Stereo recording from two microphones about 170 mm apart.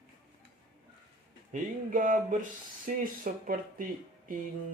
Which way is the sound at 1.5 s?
50° right (ahead or behind).